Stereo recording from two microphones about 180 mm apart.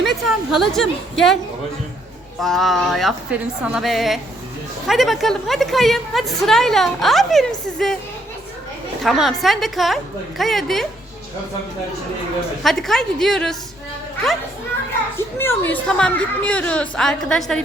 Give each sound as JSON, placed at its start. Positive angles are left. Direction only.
{"t": 0.0, "sound": "a woman's voice", "side_deg": 0}
{"t": 2.4, "sound": "a woman's voice", "side_deg": 0}
{"t": 9.0, "sound": "a woman's voice", "side_deg": 0}
{"t": 12.6, "sound": "a woman's voice", "side_deg": 0}
{"t": 15.4, "sound": "a woman's voice", "side_deg": 10}